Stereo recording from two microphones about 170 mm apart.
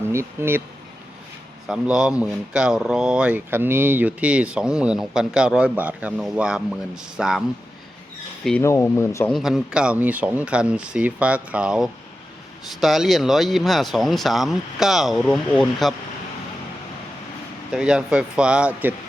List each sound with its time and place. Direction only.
0.1 s speech: 15° right (ahead or behind)
1.6 s speech: 5° right (ahead or behind)
8.6 s speech: 15° left (ahead or behind)
9.3 s speech: centre (ahead or behind)
17.7 s speech: 5° right (ahead or behind)